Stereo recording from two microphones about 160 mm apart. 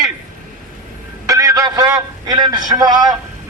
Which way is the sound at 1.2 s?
20° right (ahead or behind).